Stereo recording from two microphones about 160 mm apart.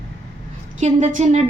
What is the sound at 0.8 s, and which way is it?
Speech, 45° right (ahead or behind).